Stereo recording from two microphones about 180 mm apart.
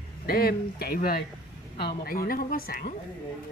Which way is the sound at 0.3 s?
60° left (ahead or behind).